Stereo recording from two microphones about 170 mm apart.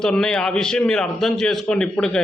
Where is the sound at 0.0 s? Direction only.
5° left (ahead or behind).